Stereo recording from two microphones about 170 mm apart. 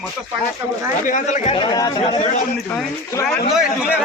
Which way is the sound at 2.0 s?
40° left (ahead or behind).